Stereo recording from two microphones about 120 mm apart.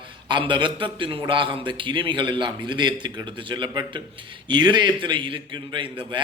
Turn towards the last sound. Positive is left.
turn(degrees=-40)  # may be behind; listen again after turning